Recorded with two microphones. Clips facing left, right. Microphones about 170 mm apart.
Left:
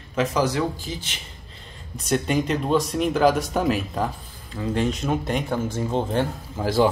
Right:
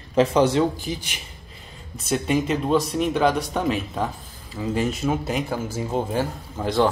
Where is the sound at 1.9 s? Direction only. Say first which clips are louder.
Even; centre (ahead or behind).